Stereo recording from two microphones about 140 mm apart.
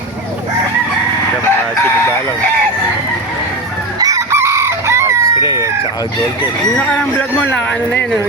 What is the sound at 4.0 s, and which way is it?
Chicken, 25° right (ahead or behind).